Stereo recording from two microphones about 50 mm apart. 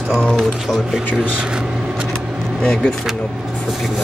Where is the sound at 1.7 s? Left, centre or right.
Centre.